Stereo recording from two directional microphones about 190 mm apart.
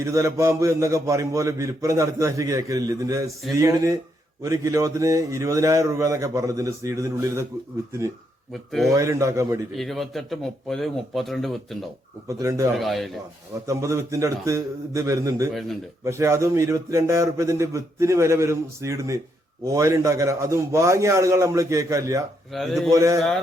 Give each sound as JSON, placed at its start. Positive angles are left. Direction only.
{"t": 0.0, "sound": "a man's voice", "side_deg": -15}
{"t": 8.9, "sound": "a man's voice", "side_deg": -15}
{"t": 9.7, "sound": "speech", "side_deg": 0}
{"t": 12.3, "sound": "a man's voice", "side_deg": -15}
{"t": 12.7, "sound": "speech", "side_deg": 0}
{"t": 13.7, "sound": "a man's voice", "side_deg": -15}
{"t": 22.5, "sound": "speech", "side_deg": 0}
{"t": 22.9, "sound": "a man's voice", "side_deg": -15}